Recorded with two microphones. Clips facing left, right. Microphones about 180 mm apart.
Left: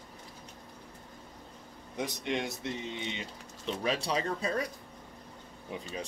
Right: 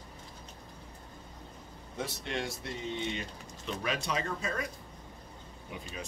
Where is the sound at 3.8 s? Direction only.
30° left (ahead or behind).